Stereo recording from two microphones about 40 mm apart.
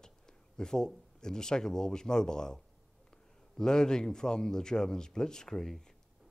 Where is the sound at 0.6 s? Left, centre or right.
Centre.